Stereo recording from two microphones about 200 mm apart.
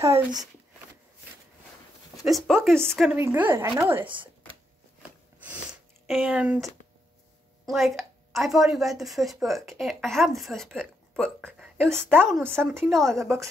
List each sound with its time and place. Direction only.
0.1 s speech: 20° right (ahead or behind)
2.2 s a woman's voice: centre (ahead or behind)
3.0 s a woman's voice: 10° right (ahead or behind)
5.4 s a sound: 5° right (ahead or behind)
7.6 s a woman's voice: centre (ahead or behind)
13.2 s a woman's voice: 15° right (ahead or behind)